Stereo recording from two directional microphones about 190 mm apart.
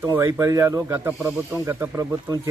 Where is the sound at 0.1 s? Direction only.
15° right (ahead or behind).